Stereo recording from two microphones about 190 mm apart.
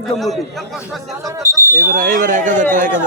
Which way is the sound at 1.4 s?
15° right (ahead or behind).